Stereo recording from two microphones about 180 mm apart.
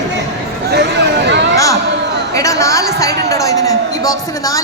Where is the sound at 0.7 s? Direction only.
70° right (ahead or behind).